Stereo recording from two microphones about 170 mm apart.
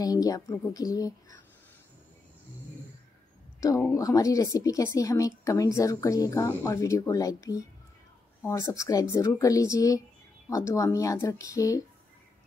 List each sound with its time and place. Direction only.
0.0 s speech: 20° left (ahead or behind)
3.9 s a woman's voice: 20° left (ahead or behind)